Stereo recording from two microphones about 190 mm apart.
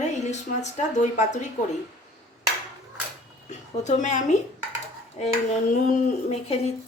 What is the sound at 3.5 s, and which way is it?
Speech, 40° left (ahead or behind).